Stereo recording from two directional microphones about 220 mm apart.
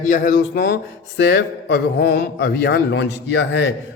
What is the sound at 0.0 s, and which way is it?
A man's voice, 35° left (ahead or behind).